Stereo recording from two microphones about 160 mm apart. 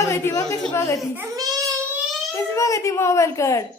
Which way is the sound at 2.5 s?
20° left (ahead or behind).